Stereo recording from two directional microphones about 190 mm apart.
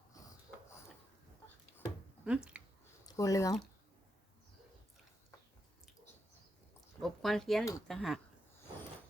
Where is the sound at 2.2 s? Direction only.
5° right (ahead or behind).